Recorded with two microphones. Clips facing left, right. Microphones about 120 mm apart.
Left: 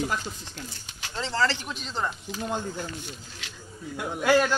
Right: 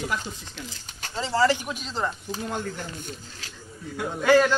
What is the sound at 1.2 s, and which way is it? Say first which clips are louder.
Speech: right 4 dB; 10° right (ahead or behind).